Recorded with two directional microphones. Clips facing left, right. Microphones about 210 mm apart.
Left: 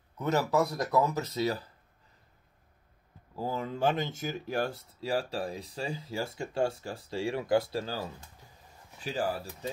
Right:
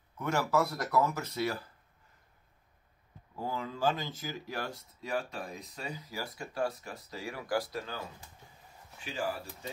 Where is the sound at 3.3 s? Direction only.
25° left (ahead or behind).